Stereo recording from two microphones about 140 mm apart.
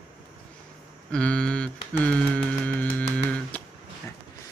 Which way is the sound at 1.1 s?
5° left (ahead or behind).